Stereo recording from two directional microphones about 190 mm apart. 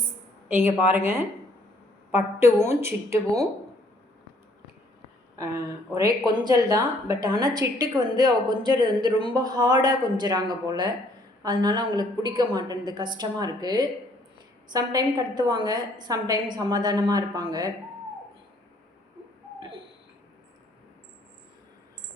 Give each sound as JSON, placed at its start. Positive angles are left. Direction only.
{"t": 0.4, "sound": "speech", "side_deg": -10}
{"t": 2.4, "sound": "speech", "side_deg": -15}
{"t": 5.9, "sound": "a woman's voice", "side_deg": -20}